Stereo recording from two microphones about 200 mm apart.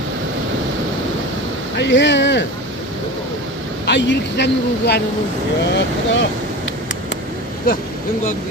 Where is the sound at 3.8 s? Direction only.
60° left (ahead or behind).